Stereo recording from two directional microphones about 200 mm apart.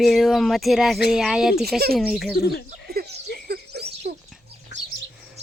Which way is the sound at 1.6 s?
50° right (ahead or behind).